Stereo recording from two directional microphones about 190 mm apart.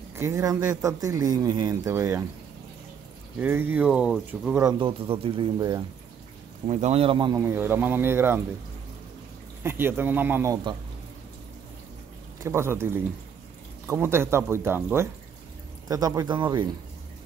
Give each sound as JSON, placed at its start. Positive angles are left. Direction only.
{"t": 0.1, "sound": "speech", "side_deg": -15}
{"t": 3.3, "sound": "speech", "side_deg": -10}
{"t": 4.7, "sound": "speech", "side_deg": -25}
{"t": 6.7, "sound": "speech", "side_deg": -35}
{"t": 7.3, "sound": "speech", "side_deg": -10}
{"t": 9.6, "sound": "speech", "side_deg": -10}
{"t": 12.4, "sound": "speech", "side_deg": -15}